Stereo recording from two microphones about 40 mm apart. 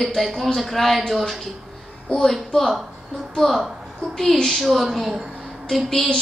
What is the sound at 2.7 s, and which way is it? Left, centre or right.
Speech, centre.